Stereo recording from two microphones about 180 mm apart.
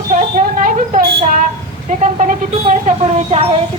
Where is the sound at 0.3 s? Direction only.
45° right (ahead or behind).